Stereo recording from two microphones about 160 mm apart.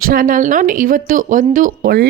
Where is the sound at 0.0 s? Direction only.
60° right (ahead or behind).